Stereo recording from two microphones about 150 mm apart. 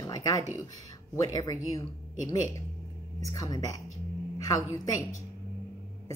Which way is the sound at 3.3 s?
25° left (ahead or behind).